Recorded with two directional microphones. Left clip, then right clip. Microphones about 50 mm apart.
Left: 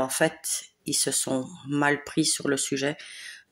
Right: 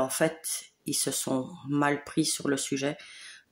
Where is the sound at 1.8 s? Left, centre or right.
Centre.